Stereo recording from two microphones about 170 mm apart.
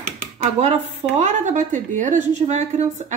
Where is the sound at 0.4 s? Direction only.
40° right (ahead or behind).